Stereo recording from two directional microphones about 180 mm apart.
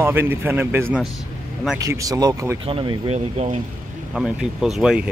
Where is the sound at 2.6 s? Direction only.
30° right (ahead or behind).